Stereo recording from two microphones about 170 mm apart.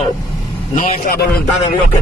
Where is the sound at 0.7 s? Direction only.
55° left (ahead or behind).